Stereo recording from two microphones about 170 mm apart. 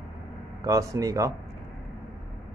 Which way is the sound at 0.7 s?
20° right (ahead or behind).